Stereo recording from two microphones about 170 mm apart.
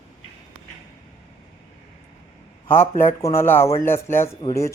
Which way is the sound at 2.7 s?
15° left (ahead or behind).